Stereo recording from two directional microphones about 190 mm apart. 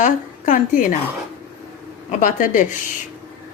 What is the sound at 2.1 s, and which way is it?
Speech, 40° left (ahead or behind).